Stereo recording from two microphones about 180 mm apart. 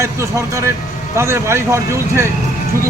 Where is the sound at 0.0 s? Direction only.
15° right (ahead or behind).